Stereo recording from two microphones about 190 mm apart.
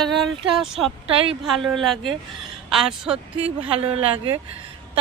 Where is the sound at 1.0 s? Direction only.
30° right (ahead or behind).